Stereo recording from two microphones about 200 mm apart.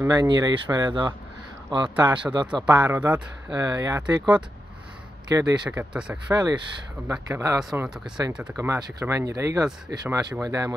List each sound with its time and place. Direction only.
0.0 s speech: 20° right (ahead or behind)
2.8 s speech: 10° right (ahead or behind)
3.5 s speech: 20° right (ahead or behind)
5.3 s speech: 20° right (ahead or behind)
5.7 s speech: 5° right (ahead or behind)
6.3 s speech: 20° right (ahead or behind); by 8.5 s 5° right (ahead or behind)
8.5 s speech: 15° right (ahead or behind)